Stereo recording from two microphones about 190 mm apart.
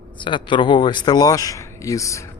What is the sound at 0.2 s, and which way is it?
A man's voice, 25° left (ahead or behind).